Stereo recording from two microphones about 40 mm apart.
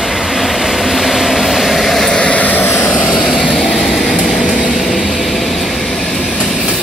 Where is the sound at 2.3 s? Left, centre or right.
Left.